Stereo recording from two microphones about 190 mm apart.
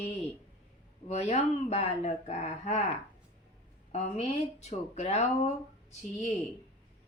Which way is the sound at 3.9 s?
35° left (ahead or behind).